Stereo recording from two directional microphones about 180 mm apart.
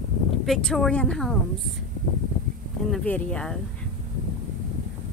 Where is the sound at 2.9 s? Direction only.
5° left (ahead or behind).